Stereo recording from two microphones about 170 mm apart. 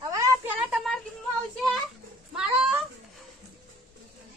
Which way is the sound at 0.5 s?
Centre (ahead or behind).